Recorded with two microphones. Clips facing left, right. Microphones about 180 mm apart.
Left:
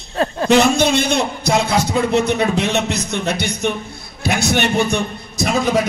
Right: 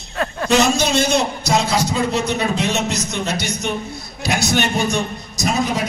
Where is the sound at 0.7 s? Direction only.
60° left (ahead or behind).